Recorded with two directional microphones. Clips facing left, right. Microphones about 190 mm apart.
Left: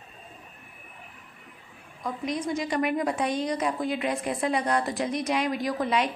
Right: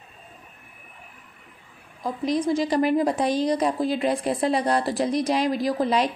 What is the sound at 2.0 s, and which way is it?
A woman's voice, 35° right (ahead or behind).